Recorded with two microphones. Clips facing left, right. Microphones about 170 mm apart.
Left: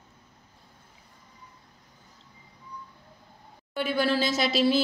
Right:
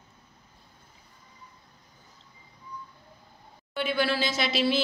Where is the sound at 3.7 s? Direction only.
40° left (ahead or behind).